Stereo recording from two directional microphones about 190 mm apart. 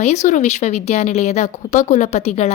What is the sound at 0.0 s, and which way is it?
A woman's voice, 35° left (ahead or behind).